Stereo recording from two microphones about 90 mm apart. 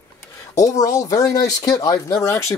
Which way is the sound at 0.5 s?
40° left (ahead or behind).